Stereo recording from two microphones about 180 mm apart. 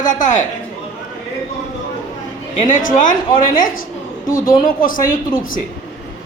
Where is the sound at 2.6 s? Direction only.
45° left (ahead or behind).